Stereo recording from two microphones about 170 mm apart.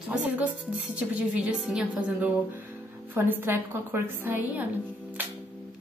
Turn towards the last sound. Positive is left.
turn(degrees=-10)  # may be behind; listen again after turning